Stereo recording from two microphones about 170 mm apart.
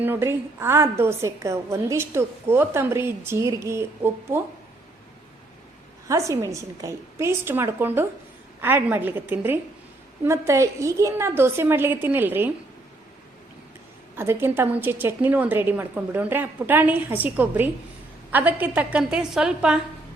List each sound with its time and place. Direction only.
0.0 s a woman's voice: 15° right (ahead or behind)
6.1 s a woman's voice: 20° right (ahead or behind)
14.2 s a woman's voice: 15° right (ahead or behind)